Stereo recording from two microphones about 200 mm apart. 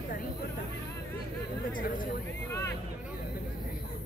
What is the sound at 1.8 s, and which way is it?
Speech, 45° left (ahead or behind).